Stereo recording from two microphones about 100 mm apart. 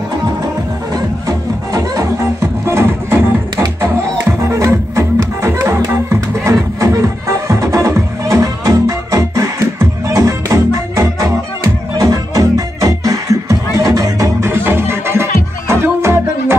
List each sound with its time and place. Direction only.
0.9 s music: 35° right (ahead or behind)
14.5 s music: 25° right (ahead or behind)